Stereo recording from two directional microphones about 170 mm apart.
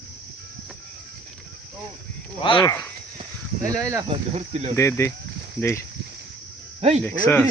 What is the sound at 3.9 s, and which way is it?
Speech, 20° right (ahead or behind).